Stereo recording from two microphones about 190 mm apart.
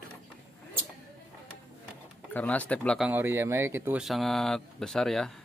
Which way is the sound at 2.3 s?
10° left (ahead or behind).